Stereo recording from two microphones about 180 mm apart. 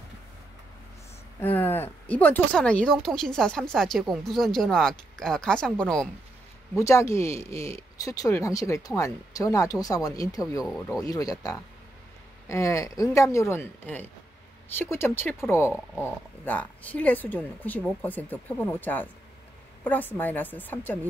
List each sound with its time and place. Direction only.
1.4 s speech: 10° left (ahead or behind)
6.8 s speech: 15° left (ahead or behind)